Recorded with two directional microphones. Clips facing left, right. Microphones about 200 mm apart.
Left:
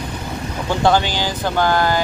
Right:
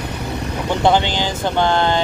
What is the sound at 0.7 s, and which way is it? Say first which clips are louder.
Speech: even; 20° right (ahead or behind).